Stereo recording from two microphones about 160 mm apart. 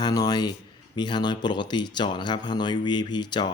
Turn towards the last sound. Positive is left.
turn(degrees=30)  # may be behind; listen again after turning